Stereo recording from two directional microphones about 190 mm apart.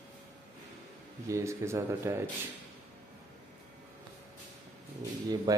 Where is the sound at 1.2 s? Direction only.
15° right (ahead or behind).